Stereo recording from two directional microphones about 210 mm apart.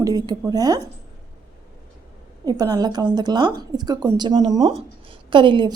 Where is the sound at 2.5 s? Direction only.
15° right (ahead or behind).